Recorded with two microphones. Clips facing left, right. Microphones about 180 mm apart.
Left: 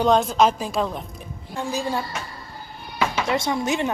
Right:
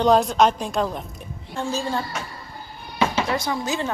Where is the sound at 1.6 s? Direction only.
15° left (ahead or behind).